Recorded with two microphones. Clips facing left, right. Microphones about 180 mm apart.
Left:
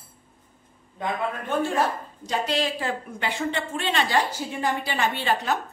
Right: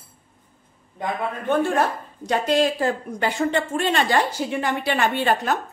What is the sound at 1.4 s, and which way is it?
Speech, 55° right (ahead or behind).